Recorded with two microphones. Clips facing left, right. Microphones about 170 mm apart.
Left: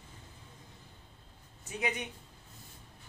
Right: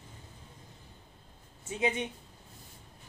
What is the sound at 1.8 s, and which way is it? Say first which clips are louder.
Speech: right 5 dB; 25° right (ahead or behind).